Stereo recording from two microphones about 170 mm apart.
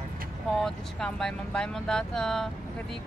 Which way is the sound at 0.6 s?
5° left (ahead or behind).